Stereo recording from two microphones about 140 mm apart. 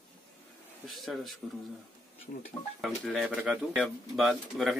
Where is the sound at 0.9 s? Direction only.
Centre (ahead or behind).